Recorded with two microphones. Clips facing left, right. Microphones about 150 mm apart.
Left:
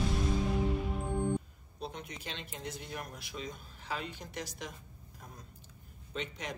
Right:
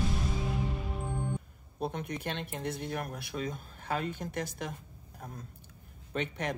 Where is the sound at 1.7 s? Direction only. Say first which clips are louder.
Right 7 dB; 55° right (ahead or behind).